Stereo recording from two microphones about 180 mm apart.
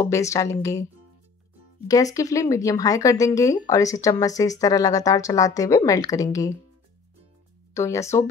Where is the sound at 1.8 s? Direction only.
20° left (ahead or behind).